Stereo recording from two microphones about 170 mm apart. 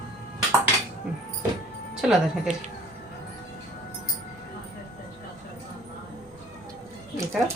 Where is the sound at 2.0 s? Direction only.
5° right (ahead or behind).